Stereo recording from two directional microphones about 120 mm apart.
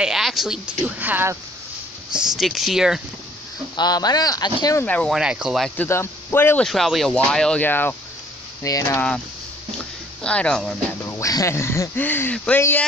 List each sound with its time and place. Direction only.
0.0 s speech: centre (ahead or behind); by 1.4 s 20° right (ahead or behind)
2.3 s speech: centre (ahead or behind)
3.7 s speech: 35° left (ahead or behind)
4.8 s speech: 10° left (ahead or behind)
5.1 s speech: 5° right (ahead or behind)
5.8 s speech: 20° left (ahead or behind)
6.6 s speech: centre (ahead or behind)
8.6 s speech: 25° left (ahead or behind)
10.2 s speech: 10° left (ahead or behind)
11.0 s speech: 25° left (ahead or behind)